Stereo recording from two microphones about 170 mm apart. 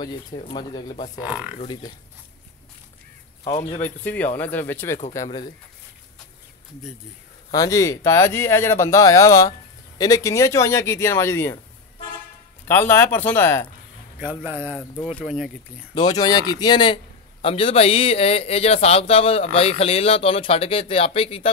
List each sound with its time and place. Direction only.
0.5 s speech: 25° left (ahead or behind)
3.4 s a man's voice: 40° left (ahead or behind)
3.8 s speech: 10° left (ahead or behind)
7.5 s speech: 20° left (ahead or behind)
12.6 s speech: 15° left (ahead or behind)
14.4 s speech: 10° right (ahead or behind)
15.9 s a man's voice: 25° left (ahead or behind)